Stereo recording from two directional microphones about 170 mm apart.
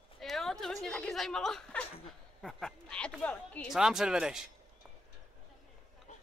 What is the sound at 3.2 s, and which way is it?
Speech, 10° left (ahead or behind).